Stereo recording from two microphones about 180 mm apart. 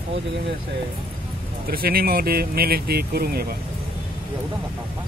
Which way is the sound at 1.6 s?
55° right (ahead or behind).